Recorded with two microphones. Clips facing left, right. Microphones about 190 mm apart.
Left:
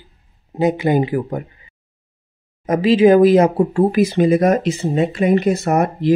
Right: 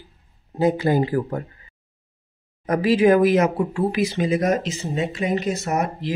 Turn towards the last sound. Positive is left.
turn(degrees=55)  # may be behind; listen again after turning